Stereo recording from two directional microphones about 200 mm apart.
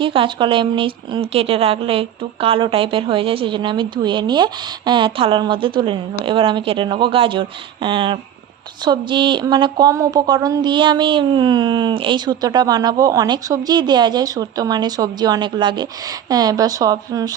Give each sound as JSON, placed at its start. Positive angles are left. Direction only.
{"t": 0.0, "sound": "speech", "side_deg": -25}